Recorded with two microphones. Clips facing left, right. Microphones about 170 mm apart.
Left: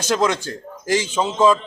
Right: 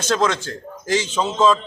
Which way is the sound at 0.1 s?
15° left (ahead or behind).